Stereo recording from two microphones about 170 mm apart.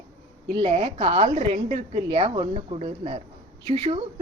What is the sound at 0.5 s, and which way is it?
A woman's voice, 35° right (ahead or behind).